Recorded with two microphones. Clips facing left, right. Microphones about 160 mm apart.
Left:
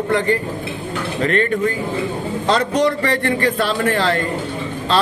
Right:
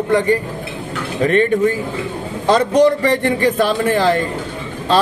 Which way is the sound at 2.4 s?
15° right (ahead or behind).